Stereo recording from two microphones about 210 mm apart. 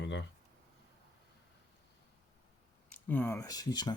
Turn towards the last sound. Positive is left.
turn(degrees=20)  # may be behind; listen again after turning